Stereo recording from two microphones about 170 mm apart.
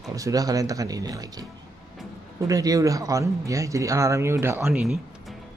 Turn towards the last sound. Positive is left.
turn(degrees=0)  # may be behind; listen again after turning